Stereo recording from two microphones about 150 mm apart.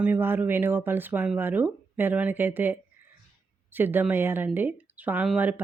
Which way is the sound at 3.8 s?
15° right (ahead or behind).